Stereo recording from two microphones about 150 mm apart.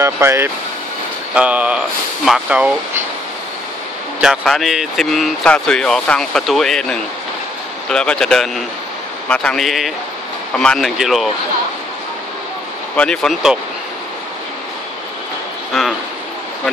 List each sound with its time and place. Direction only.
0.0 s speech: 15° right (ahead or behind)
4.2 s speech: centre (ahead or behind)
12.9 s speech: 5° left (ahead or behind)